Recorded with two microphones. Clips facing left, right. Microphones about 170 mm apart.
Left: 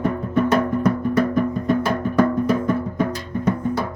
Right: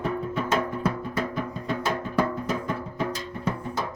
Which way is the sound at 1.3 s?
55° left (ahead or behind).